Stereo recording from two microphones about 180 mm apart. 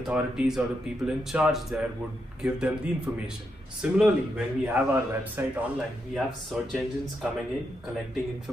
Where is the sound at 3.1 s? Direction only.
10° right (ahead or behind).